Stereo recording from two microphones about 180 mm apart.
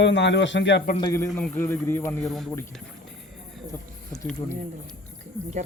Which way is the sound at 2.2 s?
Centre (ahead or behind).